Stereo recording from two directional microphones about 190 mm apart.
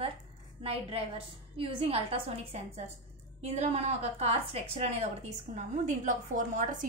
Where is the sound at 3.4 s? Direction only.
35° right (ahead or behind).